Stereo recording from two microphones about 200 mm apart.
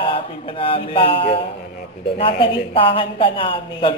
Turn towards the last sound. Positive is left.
turn(degrees=25)  # may be behind; listen again after turning